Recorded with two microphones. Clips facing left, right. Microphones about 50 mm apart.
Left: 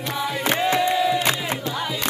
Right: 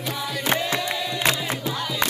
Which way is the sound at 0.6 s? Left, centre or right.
Left.